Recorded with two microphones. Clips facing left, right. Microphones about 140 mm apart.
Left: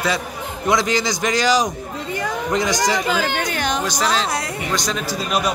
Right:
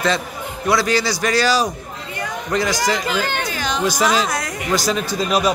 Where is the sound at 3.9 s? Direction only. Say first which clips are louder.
Right 3 dB; 10° right (ahead or behind).